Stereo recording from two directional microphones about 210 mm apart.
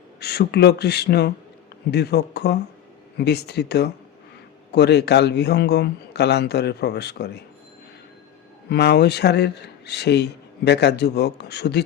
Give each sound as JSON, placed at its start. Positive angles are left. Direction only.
{"t": 0.2, "sound": "speech", "side_deg": 50}
{"t": 8.7, "sound": "speech", "side_deg": 50}